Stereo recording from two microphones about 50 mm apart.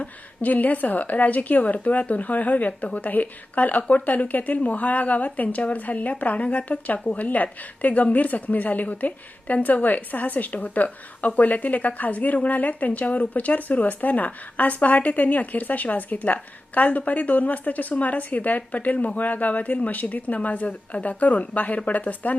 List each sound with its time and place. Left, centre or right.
0.0 s a woman's voice: left